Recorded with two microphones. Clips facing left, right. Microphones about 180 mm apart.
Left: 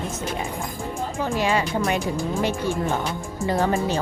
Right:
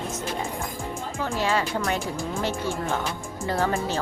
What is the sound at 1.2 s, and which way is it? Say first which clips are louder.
Speech: left 2 dB; 15° left (ahead or behind).